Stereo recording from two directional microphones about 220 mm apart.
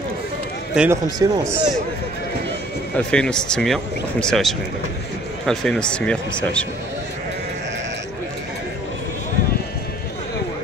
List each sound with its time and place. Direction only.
0.8 s speech: 5° right (ahead or behind)
3.0 s speech: 5° left (ahead or behind)